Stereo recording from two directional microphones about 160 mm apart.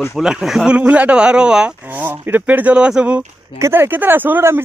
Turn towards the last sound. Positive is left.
turn(degrees=-15)  # may be behind; listen again after turning